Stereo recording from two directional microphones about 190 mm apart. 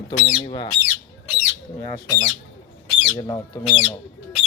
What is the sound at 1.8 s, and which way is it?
Speech, 20° left (ahead or behind).